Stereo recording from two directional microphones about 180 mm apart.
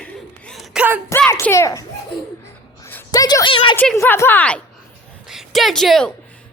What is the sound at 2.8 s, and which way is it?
Speech, 15° left (ahead or behind).